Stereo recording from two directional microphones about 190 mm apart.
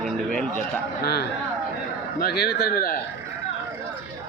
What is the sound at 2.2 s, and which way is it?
Speech, 60° left (ahead or behind).